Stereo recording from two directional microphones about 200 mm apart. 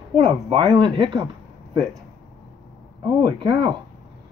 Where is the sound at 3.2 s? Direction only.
20° right (ahead or behind).